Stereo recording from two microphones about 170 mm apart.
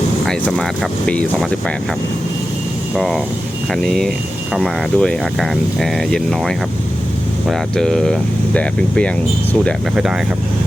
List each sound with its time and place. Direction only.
0.3 s speech: 5° left (ahead or behind)
2.9 s speech: centre (ahead or behind)